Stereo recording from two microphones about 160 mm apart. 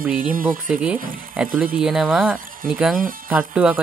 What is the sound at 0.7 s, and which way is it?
Speech, 5° right (ahead or behind).